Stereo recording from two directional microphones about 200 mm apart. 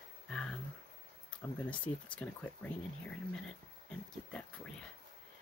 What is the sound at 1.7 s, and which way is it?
Speech, 5° left (ahead or behind).